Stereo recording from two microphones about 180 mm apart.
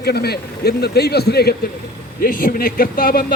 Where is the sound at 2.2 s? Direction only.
50° left (ahead or behind).